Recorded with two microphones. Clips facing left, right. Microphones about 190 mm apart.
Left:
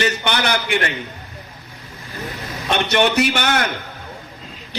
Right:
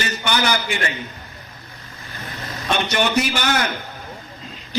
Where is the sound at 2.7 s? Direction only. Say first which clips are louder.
Left 3 dB; 60° left (ahead or behind).